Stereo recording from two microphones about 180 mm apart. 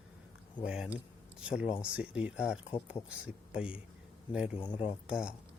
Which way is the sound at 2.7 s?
20° left (ahead or behind).